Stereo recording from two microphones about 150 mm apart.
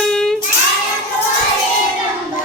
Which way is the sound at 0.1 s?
5° left (ahead or behind).